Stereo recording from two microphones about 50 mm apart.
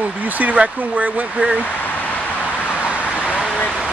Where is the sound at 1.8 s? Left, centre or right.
Left.